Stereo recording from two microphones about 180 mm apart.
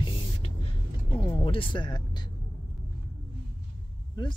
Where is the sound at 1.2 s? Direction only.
30° left (ahead or behind).